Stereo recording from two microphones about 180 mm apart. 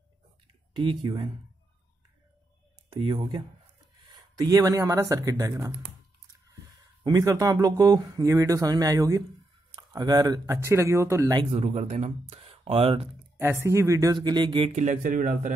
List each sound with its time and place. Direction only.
0.7 s speech: 25° right (ahead or behind)
2.9 s speech: 30° right (ahead or behind)
7.0 s speech: 20° right (ahead or behind)
11.5 s speech: 35° right (ahead or behind)
13.4 s speech: 15° right (ahead or behind)
14.8 s speech: 45° right (ahead or behind)